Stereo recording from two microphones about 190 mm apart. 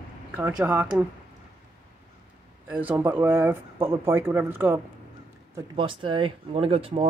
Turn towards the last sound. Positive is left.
turn(degrees=-30)  # may be behind; listen again after turning